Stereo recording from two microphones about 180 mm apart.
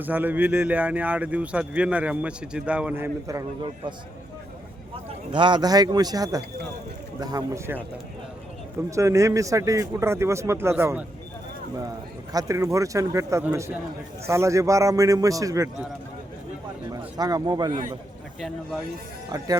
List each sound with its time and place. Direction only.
0.0 s speech: 10° right (ahead or behind)
5.3 s a man's voice: 25° right (ahead or behind)
9.0 s speech: 15° right (ahead or behind)
12.3 s speech: 20° right (ahead or behind)
17.2 s a man's voice: 20° right (ahead or behind)
18.3 s speech: centre (ahead or behind)